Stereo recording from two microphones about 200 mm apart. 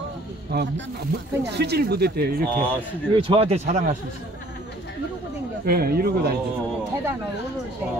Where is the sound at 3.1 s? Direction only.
25° right (ahead or behind).